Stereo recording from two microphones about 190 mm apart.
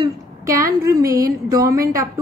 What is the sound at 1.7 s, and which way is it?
Speech, 15° right (ahead or behind).